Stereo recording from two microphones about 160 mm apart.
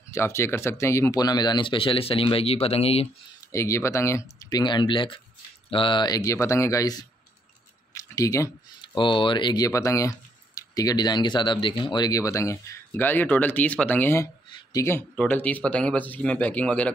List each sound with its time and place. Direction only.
0.1 s speech: 15° left (ahead or behind); by 3.1 s 40° left (ahead or behind)
3.5 s speech: 20° left (ahead or behind)